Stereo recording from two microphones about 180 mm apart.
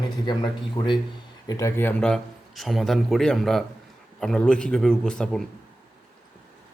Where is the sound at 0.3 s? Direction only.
25° left (ahead or behind); by 5.5 s 5° left (ahead or behind).